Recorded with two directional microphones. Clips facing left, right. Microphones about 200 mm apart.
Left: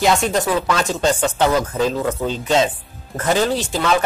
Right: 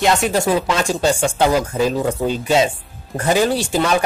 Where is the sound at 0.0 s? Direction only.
10° right (ahead or behind).